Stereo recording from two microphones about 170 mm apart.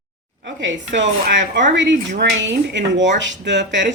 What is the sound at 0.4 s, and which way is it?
Speech, 90° right.